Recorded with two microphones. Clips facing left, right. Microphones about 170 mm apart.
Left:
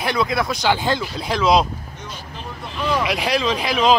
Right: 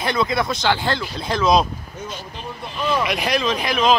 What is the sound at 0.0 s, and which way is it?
Speech, 5° left (ahead or behind).